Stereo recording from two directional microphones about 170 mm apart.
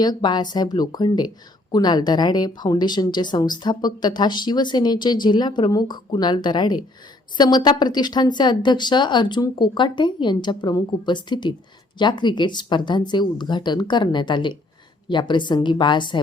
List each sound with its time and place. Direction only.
0.0 s a woman's voice: 25° left (ahead or behind)